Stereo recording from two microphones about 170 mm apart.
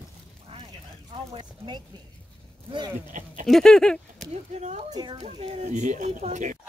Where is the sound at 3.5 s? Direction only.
Centre (ahead or behind).